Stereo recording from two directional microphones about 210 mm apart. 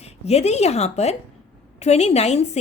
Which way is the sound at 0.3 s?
30° left (ahead or behind).